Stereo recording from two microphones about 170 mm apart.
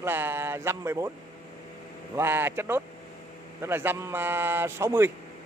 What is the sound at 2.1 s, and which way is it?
Speech, 15° right (ahead or behind).